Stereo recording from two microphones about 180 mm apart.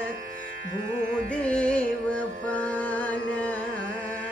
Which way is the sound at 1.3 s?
5° left (ahead or behind).